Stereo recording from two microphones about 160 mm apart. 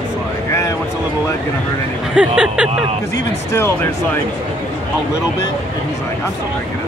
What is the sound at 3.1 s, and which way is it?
Speech, 15° left (ahead or behind).